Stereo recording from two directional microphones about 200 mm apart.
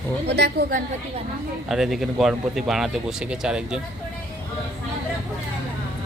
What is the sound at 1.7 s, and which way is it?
Speech, centre (ahead or behind).